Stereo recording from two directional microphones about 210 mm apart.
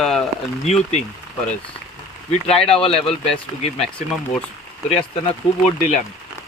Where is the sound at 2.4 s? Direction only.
25° left (ahead or behind).